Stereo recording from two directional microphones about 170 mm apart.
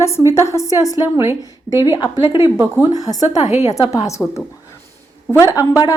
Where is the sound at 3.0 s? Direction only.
20° left (ahead or behind).